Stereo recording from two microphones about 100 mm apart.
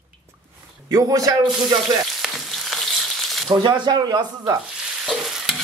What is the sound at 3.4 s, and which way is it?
Speech, 50° right (ahead or behind).